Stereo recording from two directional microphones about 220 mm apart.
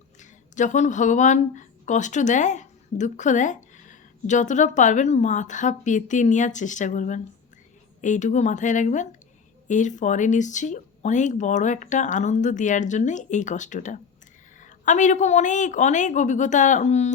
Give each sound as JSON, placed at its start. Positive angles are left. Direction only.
{"t": 0.2, "sound": "speech", "side_deg": 35}